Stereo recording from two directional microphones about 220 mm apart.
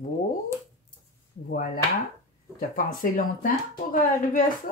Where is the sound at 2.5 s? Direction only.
40° left (ahead or behind).